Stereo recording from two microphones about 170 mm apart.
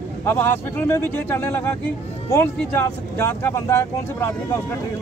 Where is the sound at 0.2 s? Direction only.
15° left (ahead or behind).